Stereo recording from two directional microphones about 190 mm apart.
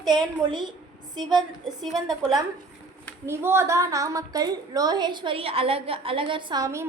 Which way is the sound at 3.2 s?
15° right (ahead or behind).